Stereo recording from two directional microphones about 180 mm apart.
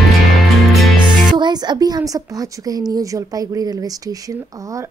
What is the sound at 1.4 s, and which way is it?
A woman's voice, 25° right (ahead or behind).